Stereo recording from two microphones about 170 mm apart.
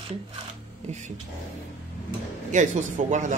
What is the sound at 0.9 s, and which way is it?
Speech, 45° right (ahead or behind).